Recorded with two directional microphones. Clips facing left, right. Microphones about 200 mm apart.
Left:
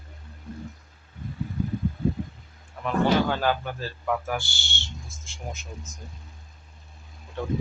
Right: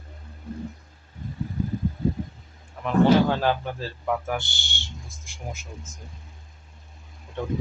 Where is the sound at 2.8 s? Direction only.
25° right (ahead or behind); by 6.0 s 5° right (ahead or behind).